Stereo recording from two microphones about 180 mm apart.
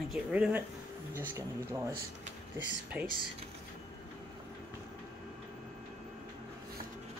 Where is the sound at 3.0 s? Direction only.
5° right (ahead or behind).